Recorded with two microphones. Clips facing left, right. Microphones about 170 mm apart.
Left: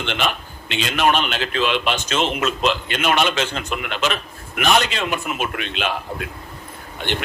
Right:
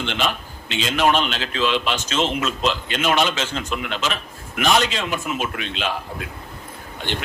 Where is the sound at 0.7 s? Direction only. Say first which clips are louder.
Even; 60° left (ahead or behind).